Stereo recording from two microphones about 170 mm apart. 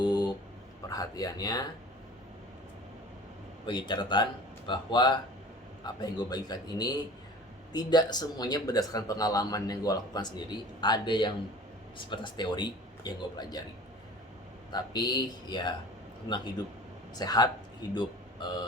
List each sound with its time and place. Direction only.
0.0 s a sound: 25° left (ahead or behind)
0.9 s speech: 20° left (ahead or behind)
3.7 s speech: 25° left (ahead or behind)
14.7 s speech: 25° left (ahead or behind)
17.2 s speech: 25° left (ahead or behind)